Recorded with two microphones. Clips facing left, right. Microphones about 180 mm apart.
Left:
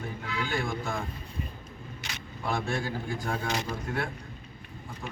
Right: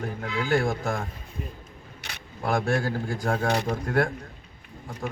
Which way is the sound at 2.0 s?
60° right (ahead or behind).